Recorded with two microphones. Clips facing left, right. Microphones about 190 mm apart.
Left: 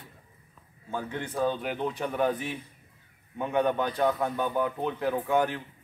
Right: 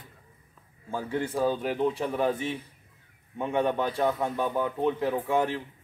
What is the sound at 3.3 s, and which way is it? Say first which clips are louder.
A man's voice: even; centre (ahead or behind).